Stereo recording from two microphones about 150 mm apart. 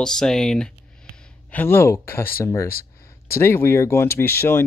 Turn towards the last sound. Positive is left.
turn(degrees=15)  # may be behind; listen again after turning